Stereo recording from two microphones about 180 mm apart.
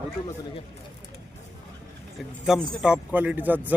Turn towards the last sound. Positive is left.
turn(degrees=-10)  # may be behind; listen again after turning